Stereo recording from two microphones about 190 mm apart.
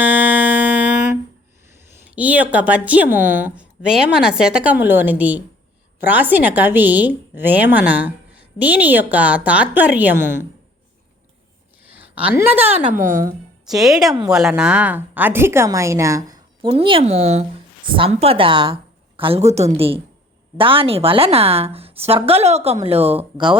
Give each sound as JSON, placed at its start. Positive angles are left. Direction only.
{"t": 0.0, "sound": "music", "side_deg": -10}
{"t": 2.1, "sound": "a woman's voice", "side_deg": -10}
{"t": 12.4, "sound": "a woman's voice", "side_deg": -10}
{"t": 12.7, "sound": "a woman's voice", "side_deg": -45}
{"t": 13.7, "sound": "a woman's voice", "side_deg": 0}